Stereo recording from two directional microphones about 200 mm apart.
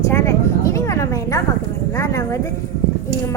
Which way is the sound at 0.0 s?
15° left (ahead or behind).